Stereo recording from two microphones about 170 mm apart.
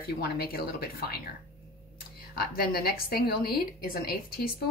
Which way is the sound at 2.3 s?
65° left (ahead or behind).